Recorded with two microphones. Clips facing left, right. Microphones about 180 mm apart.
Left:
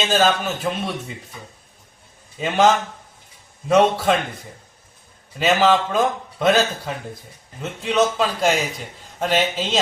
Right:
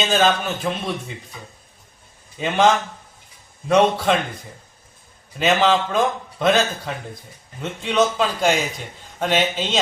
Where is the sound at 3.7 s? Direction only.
Centre (ahead or behind).